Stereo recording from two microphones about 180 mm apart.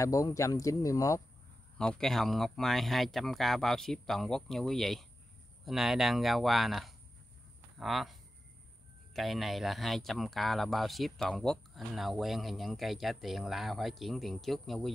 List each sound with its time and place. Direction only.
0.0 s speech: 20° left (ahead or behind)
1.8 s speech: 5° left (ahead or behind)